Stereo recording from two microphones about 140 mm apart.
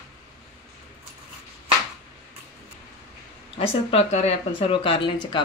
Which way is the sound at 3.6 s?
45° left (ahead or behind).